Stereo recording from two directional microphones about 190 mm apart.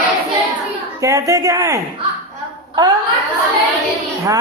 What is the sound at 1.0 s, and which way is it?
Speech, 20° right (ahead or behind).